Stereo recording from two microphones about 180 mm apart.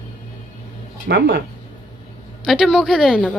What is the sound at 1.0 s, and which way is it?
Speech, 65° right (ahead or behind).